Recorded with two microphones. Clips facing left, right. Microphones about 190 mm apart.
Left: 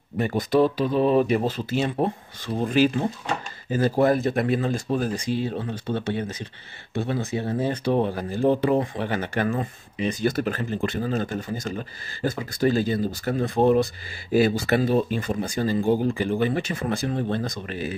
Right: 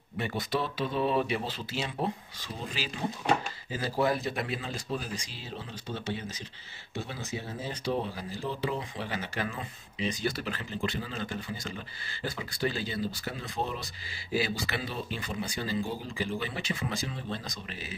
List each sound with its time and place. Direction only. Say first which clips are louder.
0.2 s speech: left 11 dB; 45° left (ahead or behind)